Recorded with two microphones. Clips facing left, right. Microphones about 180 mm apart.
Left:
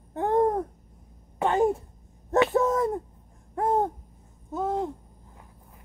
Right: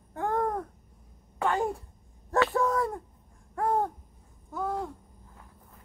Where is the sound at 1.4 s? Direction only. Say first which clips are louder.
Left 5 dB; 20° left (ahead or behind).